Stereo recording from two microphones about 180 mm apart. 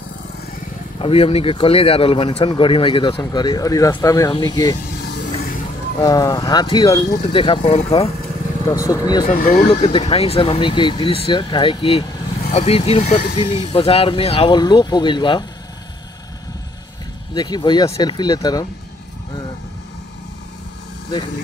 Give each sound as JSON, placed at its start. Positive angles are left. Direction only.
{"t": 0.9, "sound": "speech", "side_deg": 30}
{"t": 4.8, "sound": "vehicle", "side_deg": 70}
{"t": 6.0, "sound": "speech", "side_deg": 20}
{"t": 8.6, "sound": "speech", "side_deg": 20}
{"t": 9.4, "sound": "speech", "side_deg": 55}
{"t": 9.8, "sound": "speech", "side_deg": 35}
{"t": 17.3, "sound": "speech", "side_deg": 25}